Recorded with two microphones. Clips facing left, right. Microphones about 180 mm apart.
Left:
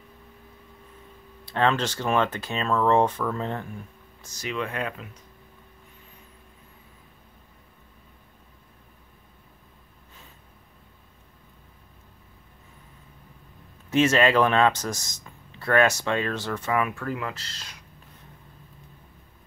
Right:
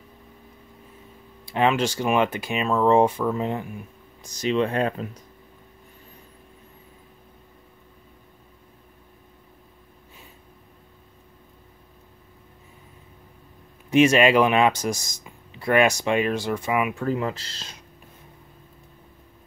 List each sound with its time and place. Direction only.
1.4 s speech: 10° right (ahead or behind); by 5.0 s 35° right (ahead or behind)
13.8 s speech: 15° right (ahead or behind)